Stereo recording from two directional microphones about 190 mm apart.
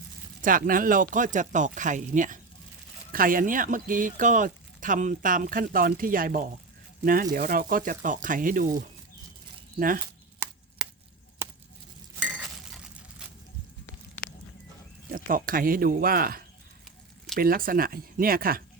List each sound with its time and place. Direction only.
0.4 s speech: 45° right (ahead or behind)
11.4 s a sound: 10° right (ahead or behind)
15.1 s speech: 45° right (ahead or behind)